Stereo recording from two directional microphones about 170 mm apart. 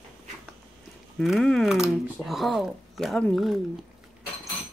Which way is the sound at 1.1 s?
Centre (ahead or behind).